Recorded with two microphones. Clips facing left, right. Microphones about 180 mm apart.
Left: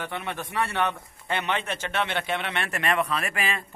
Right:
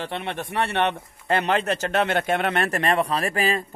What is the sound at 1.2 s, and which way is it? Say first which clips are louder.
A man's voice: right 6 dB; 40° right (ahead or behind).